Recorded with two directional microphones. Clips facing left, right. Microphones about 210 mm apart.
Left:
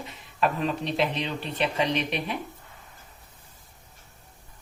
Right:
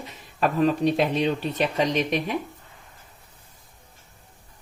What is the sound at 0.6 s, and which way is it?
Speech, 45° right (ahead or behind).